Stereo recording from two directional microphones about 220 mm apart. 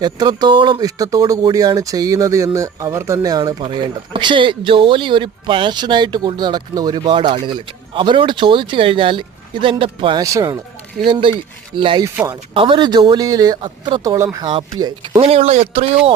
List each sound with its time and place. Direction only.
0.0 s speech: 20° right (ahead or behind)
12.5 s speech: 20° right (ahead or behind)